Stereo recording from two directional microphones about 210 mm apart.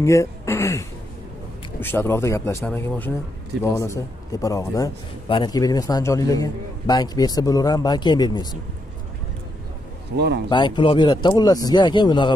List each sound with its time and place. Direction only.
0.0 s a man's voice: 15° left (ahead or behind)
10.1 s speech: 55° right (ahead or behind)
10.5 s speech: 25° left (ahead or behind)